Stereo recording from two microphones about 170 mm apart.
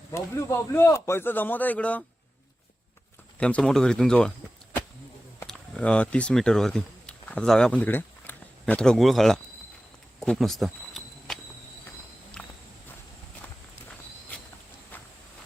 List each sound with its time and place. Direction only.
0.1 s a man's voice: 15° left (ahead or behind)
3.3 s speech: 5° left (ahead or behind)
5.5 s speech: 5° left (ahead or behind)
10.2 s a sound: centre (ahead or behind)